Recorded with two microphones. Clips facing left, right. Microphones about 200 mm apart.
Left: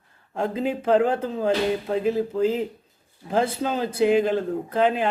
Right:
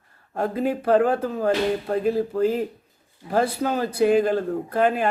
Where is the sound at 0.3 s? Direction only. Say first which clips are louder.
Right 1 dB; 15° left (ahead or behind).